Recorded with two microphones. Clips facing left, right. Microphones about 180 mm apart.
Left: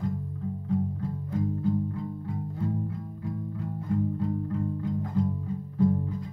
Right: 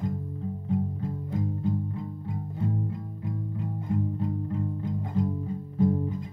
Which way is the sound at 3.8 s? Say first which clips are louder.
Left 2 dB; 20° right (ahead or behind).